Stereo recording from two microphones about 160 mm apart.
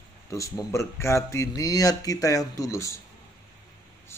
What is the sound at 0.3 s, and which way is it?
Speech, 20° left (ahead or behind).